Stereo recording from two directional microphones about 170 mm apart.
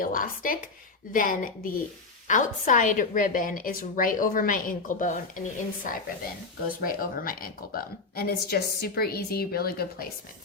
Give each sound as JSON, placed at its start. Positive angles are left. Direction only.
{"t": 0.0, "sound": "a woman's voice", "side_deg": 55}